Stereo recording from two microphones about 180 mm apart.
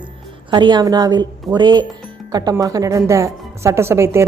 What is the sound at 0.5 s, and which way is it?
A woman's voice, 25° right (ahead or behind).